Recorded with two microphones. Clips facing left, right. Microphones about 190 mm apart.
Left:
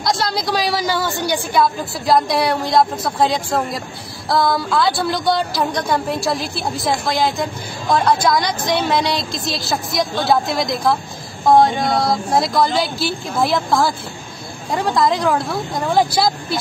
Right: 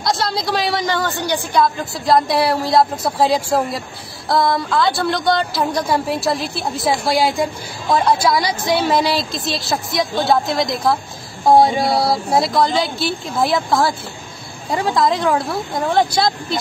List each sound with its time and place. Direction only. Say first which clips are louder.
0.0 s a woman's voice: even; centre (ahead or behind)